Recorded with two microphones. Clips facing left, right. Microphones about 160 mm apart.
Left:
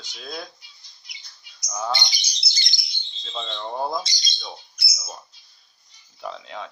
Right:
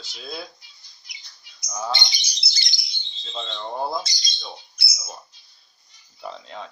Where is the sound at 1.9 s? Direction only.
25° right (ahead or behind).